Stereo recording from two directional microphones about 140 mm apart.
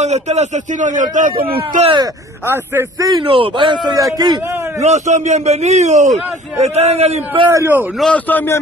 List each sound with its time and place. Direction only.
0.0 s a man's voice: 55° right (ahead or behind); by 1.8 s 90° right
2.4 s a man's voice: 15° right (ahead or behind)
4.8 s a man's voice: 55° right (ahead or behind)
7.5 s a man's voice: 15° right (ahead or behind)
8.0 s a man's voice: 10° left (ahead or behind)